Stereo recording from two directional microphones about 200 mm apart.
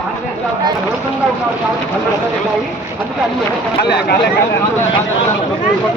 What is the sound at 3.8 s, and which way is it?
Speech, 55° left (ahead or behind).